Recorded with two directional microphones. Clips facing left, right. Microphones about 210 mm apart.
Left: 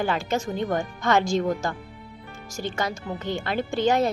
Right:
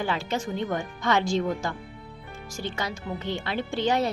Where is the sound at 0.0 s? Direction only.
45° left (ahead or behind).